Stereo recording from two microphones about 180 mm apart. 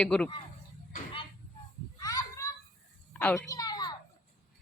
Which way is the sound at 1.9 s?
20° left (ahead or behind).